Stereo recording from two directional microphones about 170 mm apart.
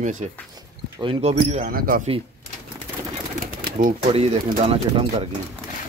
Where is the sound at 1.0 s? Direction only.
35° right (ahead or behind); by 2.0 s 55° right (ahead or behind).